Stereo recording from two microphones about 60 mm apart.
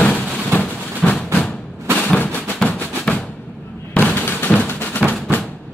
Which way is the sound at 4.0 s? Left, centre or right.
Left.